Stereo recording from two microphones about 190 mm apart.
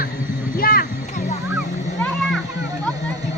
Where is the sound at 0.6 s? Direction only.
50° left (ahead or behind).